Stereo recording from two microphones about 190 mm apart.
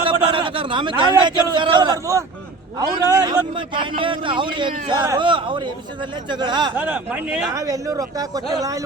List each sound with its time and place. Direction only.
0.0 s a man's voice: 25° right (ahead or behind)
6.7 s speech: 10° right (ahead or behind)